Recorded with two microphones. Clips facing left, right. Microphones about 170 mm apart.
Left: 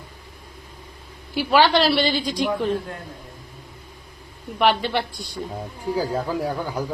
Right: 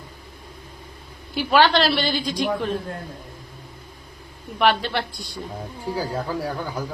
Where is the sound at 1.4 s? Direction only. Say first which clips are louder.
Even; 10° left (ahead or behind).